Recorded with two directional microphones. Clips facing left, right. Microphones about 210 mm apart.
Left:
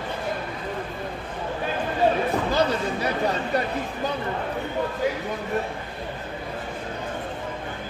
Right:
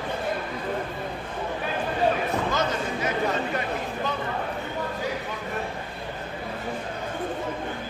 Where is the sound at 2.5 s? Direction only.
35° left (ahead or behind).